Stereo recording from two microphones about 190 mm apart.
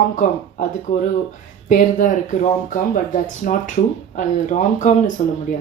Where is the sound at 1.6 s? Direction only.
40° left (ahead or behind).